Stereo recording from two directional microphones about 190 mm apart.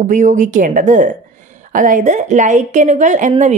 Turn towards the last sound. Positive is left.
turn(degrees=-40)  # may be behind; listen again after turning